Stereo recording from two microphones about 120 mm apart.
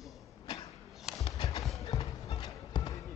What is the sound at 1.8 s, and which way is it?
Clip-clop, 55° left (ahead or behind).